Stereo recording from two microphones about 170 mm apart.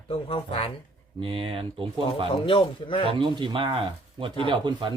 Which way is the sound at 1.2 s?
30° right (ahead or behind).